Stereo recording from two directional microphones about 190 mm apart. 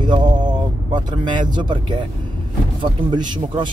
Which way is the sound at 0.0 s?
25° right (ahead or behind).